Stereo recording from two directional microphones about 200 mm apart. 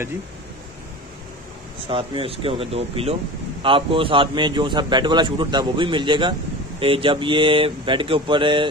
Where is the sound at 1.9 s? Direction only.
25° right (ahead or behind).